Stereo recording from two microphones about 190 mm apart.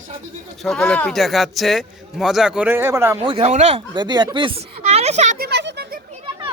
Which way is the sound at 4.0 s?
25° right (ahead or behind).